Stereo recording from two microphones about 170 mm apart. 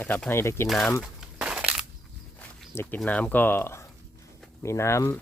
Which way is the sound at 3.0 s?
5° left (ahead or behind).